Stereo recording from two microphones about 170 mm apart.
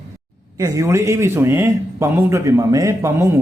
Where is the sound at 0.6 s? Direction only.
20° right (ahead or behind).